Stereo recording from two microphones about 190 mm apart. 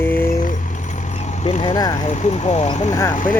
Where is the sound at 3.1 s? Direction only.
45° left (ahead or behind).